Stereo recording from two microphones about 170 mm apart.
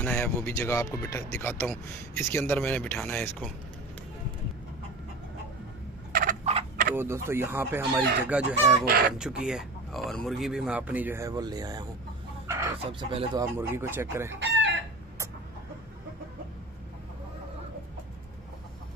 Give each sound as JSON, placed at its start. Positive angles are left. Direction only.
{"t": 0.0, "sound": "speech", "side_deg": 5}
{"t": 6.1, "sound": "turkey", "side_deg": -55}
{"t": 7.0, "sound": "speech", "side_deg": -15}
{"t": 8.8, "sound": "speech", "side_deg": -60}
{"t": 9.2, "sound": "speech", "side_deg": -5}
{"t": 12.4, "sound": "chicken", "side_deg": -15}
{"t": 13.1, "sound": "speech", "side_deg": -35}
{"t": 13.4, "sound": "speech", "side_deg": -15}
{"t": 14.4, "sound": "chicken", "side_deg": -90}